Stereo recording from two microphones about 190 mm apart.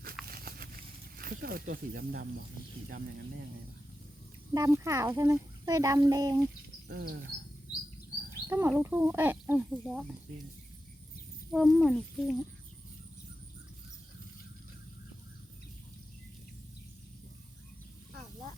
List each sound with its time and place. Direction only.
0.3 s a sound: 50° right (ahead or behind)
1.2 s speech: 50° right (ahead or behind)
4.5 s a child's voice: 15° right (ahead or behind)
6.8 s speech: 55° right (ahead or behind)
8.4 s a child's voice: 15° right (ahead or behind)
11.5 s speech: centre (ahead or behind)